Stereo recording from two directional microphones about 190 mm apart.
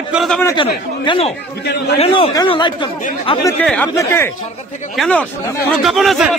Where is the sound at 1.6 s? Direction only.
60° left (ahead or behind).